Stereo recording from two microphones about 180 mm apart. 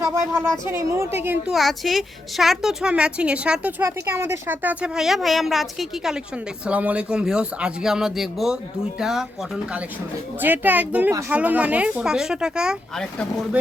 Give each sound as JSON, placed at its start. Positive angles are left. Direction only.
{"t": 0.0, "sound": "speech", "side_deg": -15}
{"t": 1.5, "sound": "a woman's voice", "side_deg": 0}
{"t": 10.4, "sound": "speech", "side_deg": -10}